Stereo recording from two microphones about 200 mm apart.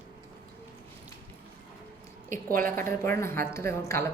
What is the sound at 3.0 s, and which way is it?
A woman's voice, 10° left (ahead or behind).